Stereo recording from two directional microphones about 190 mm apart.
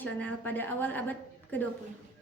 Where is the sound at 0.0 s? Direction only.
10° left (ahead or behind).